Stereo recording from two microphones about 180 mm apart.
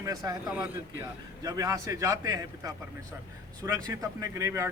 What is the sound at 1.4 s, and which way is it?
A man's voice, 20° right (ahead or behind).